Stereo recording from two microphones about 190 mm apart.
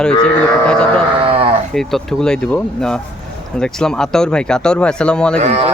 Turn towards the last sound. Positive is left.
turn(degrees=-35)  # may be behind; listen again after turning